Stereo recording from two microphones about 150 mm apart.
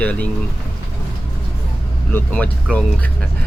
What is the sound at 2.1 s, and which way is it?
Speech, 10° left (ahead or behind).